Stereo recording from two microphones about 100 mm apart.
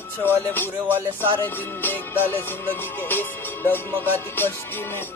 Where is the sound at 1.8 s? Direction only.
20° left (ahead or behind).